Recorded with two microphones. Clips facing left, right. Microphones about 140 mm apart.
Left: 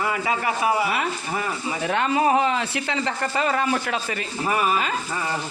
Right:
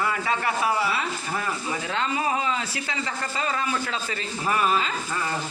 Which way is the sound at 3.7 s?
50° left (ahead or behind).